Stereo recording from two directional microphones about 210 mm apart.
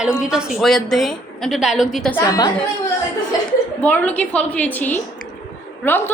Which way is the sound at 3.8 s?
5° left (ahead or behind).